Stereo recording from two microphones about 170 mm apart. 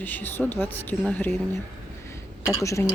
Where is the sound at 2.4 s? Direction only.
15° left (ahead or behind).